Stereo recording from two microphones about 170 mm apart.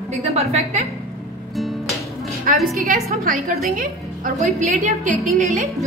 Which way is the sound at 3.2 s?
60° right (ahead or behind).